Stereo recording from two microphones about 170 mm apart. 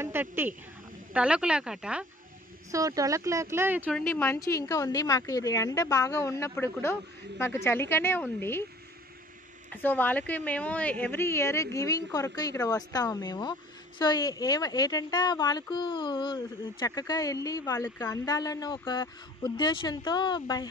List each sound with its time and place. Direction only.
0.0 s speech: 10° right (ahead or behind)
2.7 s speech: 20° right (ahead or behind)
3.9 s a woman's voice: 15° left (ahead or behind)
9.7 s a woman's voice: 10° left (ahead or behind)